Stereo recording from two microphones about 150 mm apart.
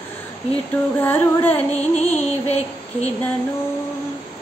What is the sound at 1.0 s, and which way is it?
Synthetic singing, 10° left (ahead or behind).